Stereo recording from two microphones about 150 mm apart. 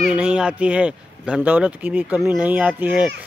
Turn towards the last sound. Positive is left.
turn(degrees=-10)  # may be behind; listen again after turning